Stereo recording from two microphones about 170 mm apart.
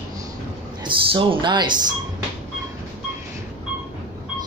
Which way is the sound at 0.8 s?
30° right (ahead or behind).